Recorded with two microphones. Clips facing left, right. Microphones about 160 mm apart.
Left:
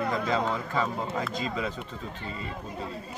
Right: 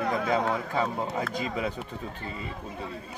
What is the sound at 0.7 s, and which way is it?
Speech, 15° right (ahead or behind).